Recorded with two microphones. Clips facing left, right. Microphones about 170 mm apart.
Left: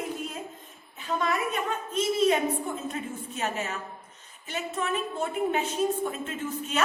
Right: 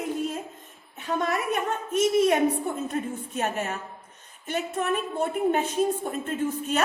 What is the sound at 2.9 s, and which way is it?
A woman's voice, 50° right (ahead or behind).